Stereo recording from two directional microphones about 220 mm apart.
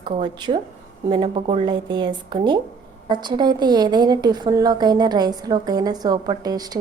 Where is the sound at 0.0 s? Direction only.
20° right (ahead or behind).